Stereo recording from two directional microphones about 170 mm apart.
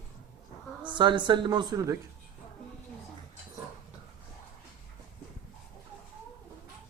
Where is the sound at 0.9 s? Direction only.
25° right (ahead or behind).